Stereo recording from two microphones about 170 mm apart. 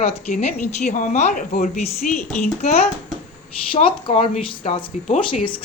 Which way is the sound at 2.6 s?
40° left (ahead or behind).